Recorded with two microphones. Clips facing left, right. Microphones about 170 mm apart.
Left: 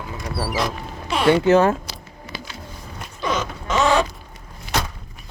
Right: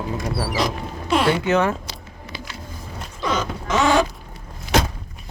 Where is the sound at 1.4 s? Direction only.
25° left (ahead or behind).